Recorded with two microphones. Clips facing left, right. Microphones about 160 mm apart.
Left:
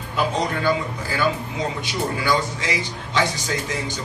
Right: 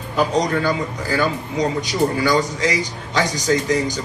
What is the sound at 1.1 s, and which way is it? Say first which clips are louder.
A man's voice: right 3 dB; 40° right (ahead or behind).